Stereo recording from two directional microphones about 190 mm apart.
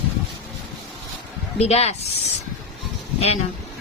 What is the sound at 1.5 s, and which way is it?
Speech, 35° left (ahead or behind).